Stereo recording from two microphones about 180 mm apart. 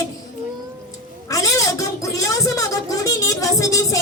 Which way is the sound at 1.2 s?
20° left (ahead or behind).